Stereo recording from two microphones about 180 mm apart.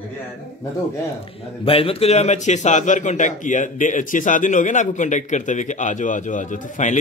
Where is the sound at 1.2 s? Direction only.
30° left (ahead or behind).